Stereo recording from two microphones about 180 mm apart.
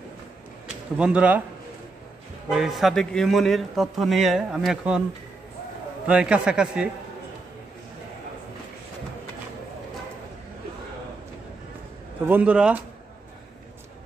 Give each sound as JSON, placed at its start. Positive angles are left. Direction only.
{"t": 0.9, "sound": "a man's voice", "side_deg": -5}
{"t": 2.5, "sound": "a man's voice", "side_deg": 0}
{"t": 6.0, "sound": "a man's voice", "side_deg": -5}
{"t": 12.3, "sound": "speech", "side_deg": -10}